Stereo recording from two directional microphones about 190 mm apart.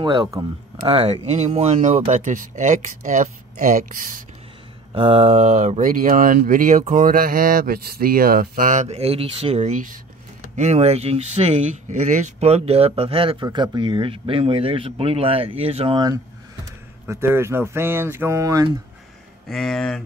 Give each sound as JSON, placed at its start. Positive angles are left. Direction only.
{"t": 0.0, "sound": "speech", "side_deg": -25}
{"t": 0.8, "sound": "speech", "side_deg": -30}
{"t": 4.9, "sound": "speech", "side_deg": -30}
{"t": 17.0, "sound": "speech", "side_deg": -10}
{"t": 19.5, "sound": "speech", "side_deg": 5}